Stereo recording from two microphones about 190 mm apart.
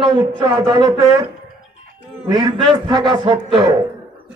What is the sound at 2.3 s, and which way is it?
A man's voice, 20° right (ahead or behind).